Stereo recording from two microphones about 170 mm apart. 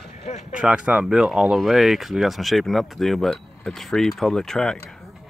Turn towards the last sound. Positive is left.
turn(degrees=5)  # may be behind; listen again after turning